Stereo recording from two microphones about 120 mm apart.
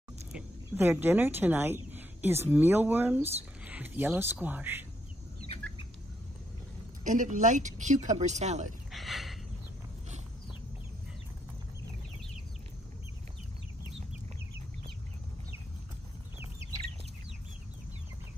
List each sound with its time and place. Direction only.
0.7 s speech: 20° right (ahead or behind)
3.2 s speech: 60° right (ahead or behind)
3.6 s speech: 15° right (ahead or behind)
7.1 s speech: 90° right; by 8.6 s 70° right (ahead or behind)
8.9 s a sound: centre (ahead or behind)